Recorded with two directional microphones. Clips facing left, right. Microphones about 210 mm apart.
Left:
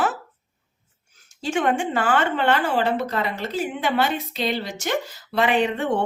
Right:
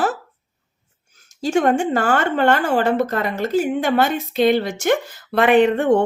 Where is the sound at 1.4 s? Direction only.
40° right (ahead or behind).